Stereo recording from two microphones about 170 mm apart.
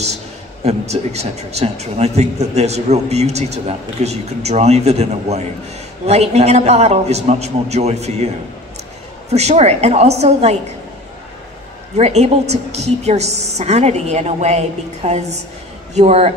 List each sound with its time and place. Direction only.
0.7 s a man's voice: 40° right (ahead or behind)
9.3 s a man's voice: 40° right (ahead or behind)
12.0 s a man's voice: 40° right (ahead or behind)